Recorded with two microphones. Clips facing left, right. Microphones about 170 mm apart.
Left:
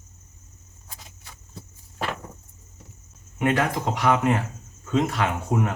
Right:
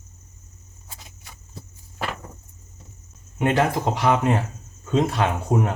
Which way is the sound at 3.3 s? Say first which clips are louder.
Right 2 dB; 30° right (ahead or behind).